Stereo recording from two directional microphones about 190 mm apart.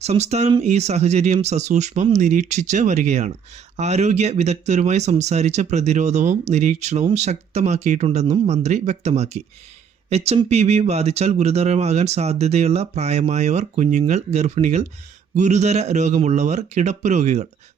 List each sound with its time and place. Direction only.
0.0 s speech: 35° right (ahead or behind)